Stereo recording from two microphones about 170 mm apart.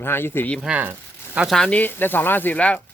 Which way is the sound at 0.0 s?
15° left (ahead or behind).